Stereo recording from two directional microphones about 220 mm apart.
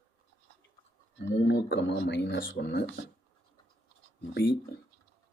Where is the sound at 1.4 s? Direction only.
55° left (ahead or behind).